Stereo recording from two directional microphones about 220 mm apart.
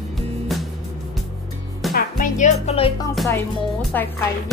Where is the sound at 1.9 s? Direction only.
40° left (ahead or behind).